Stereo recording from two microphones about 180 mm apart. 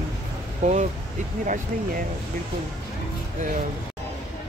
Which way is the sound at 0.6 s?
40° right (ahead or behind).